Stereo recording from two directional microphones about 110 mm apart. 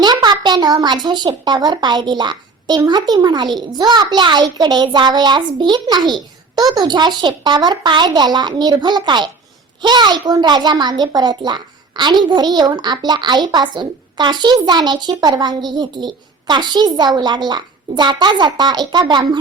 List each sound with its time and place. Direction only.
0.0 s a child's voice: 40° right (ahead or behind)